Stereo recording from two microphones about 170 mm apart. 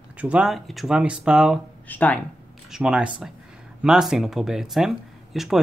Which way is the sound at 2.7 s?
5° right (ahead or behind).